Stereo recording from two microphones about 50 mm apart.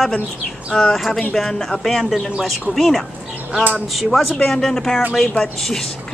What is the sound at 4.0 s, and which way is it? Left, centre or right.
Speech, centre.